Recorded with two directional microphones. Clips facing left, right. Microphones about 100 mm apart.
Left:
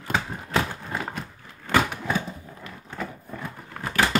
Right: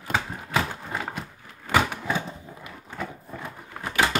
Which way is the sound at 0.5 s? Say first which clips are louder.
Left 1 dB; 10° right (ahead or behind).